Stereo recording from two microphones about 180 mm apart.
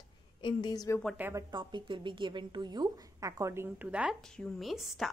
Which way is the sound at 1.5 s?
25° right (ahead or behind).